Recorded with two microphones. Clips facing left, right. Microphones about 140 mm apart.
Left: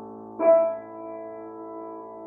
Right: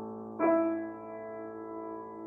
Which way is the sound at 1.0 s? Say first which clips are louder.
Left 4 dB; 35° left (ahead or behind).